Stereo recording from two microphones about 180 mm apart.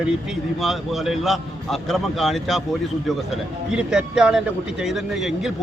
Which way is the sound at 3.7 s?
5° right (ahead or behind).